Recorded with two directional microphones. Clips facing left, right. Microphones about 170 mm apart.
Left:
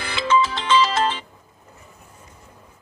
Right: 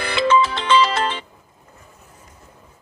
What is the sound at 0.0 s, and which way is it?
Music, 60° right (ahead or behind).